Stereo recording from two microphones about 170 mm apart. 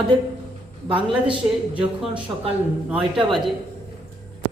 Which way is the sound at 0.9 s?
30° right (ahead or behind).